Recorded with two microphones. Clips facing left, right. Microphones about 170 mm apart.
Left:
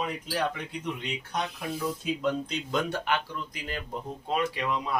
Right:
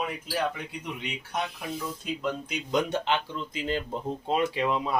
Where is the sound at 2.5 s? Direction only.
15° right (ahead or behind).